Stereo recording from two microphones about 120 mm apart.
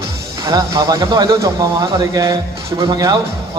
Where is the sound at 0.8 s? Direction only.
40° right (ahead or behind).